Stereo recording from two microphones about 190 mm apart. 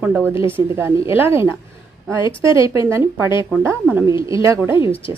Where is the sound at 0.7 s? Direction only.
15° right (ahead or behind).